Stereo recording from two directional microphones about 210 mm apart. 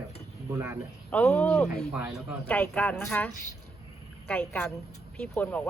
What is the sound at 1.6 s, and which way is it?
Speech, 5° right (ahead or behind).